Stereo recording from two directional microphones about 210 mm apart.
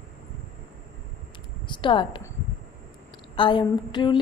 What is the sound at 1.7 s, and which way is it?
Speech, 25° left (ahead or behind).